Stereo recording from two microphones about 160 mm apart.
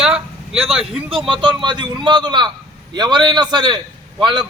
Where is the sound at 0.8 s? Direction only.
35° right (ahead or behind).